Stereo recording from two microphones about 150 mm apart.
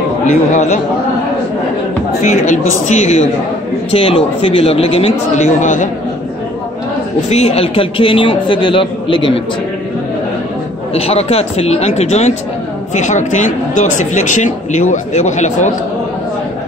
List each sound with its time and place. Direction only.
0.3 s speech: 50° left (ahead or behind)
2.4 s speech: 55° left (ahead or behind)
3.9 s a man's voice: 40° left (ahead or behind); by 5.9 s 55° left (ahead or behind)
7.2 s a man's voice: 45° left (ahead or behind)
11.0 s speech: 40° left (ahead or behind)